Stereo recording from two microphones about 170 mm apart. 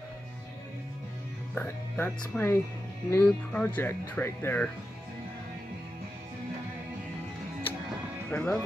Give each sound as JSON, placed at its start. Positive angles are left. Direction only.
{"t": 1.5, "sound": "speech", "side_deg": 10}
{"t": 8.3, "sound": "speech", "side_deg": 10}